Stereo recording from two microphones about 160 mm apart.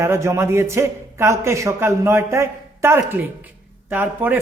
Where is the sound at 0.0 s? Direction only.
15° right (ahead or behind).